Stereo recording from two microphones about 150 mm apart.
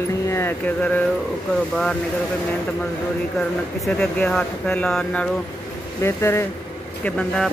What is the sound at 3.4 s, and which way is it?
Speech, 5° left (ahead or behind).